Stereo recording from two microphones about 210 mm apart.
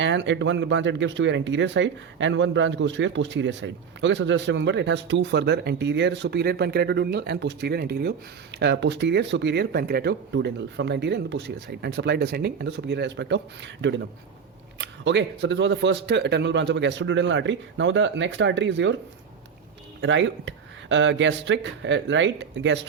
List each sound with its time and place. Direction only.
0.0 s speech: 60° right (ahead or behind)
20.0 s speech: 60° right (ahead or behind)